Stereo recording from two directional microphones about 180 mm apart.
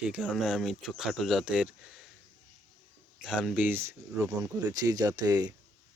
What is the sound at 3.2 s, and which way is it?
Speech, centre (ahead or behind).